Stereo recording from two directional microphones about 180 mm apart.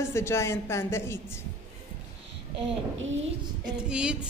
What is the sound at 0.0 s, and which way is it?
A woman's voice, 15° left (ahead or behind).